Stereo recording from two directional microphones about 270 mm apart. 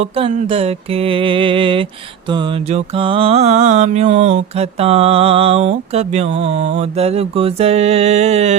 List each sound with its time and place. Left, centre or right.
0.0 s mantra: right